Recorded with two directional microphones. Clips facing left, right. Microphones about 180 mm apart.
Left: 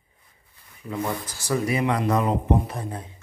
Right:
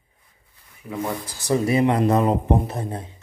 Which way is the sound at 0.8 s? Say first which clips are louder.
Right 1 dB; 10° right (ahead or behind).